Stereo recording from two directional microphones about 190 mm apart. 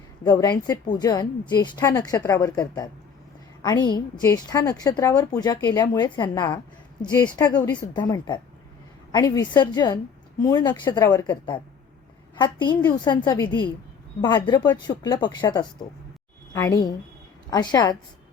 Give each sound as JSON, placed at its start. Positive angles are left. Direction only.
{"t": 0.3, "sound": "a woman's voice", "side_deg": 20}